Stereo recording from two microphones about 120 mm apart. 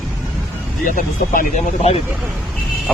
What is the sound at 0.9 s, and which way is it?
Speech, 85° left.